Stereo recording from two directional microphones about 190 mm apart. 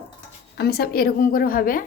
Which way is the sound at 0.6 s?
55° left (ahead or behind).